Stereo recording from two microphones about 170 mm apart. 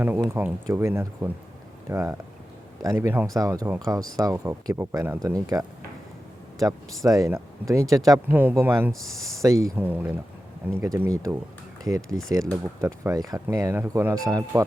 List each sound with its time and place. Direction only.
0.2 s speech: 15° right (ahead or behind)
8.9 s speech: centre (ahead or behind)
9.4 s speech: 20° right (ahead or behind)
12.0 s speech: centre (ahead or behind)
12.8 s speech: 20° right (ahead or behind)